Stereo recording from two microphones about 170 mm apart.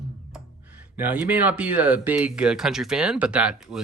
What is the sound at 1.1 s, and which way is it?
Speech, 10° right (ahead or behind).